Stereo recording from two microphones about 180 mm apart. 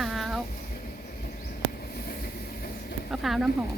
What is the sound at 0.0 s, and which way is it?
Vehicle, centre (ahead or behind).